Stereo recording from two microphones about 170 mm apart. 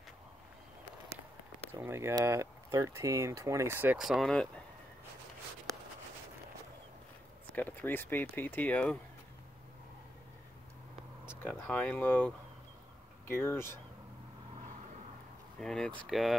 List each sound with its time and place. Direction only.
1.7 s speech: 15° right (ahead or behind); by 4.5 s centre (ahead or behind)
7.5 s speech: 10° left (ahead or behind)
11.5 s speech: 5° left (ahead or behind)
15.6 s speech: 5° left (ahead or behind)